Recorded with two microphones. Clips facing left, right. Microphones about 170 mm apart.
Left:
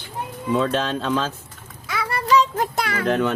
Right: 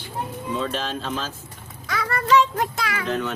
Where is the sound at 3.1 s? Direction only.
60° left (ahead or behind).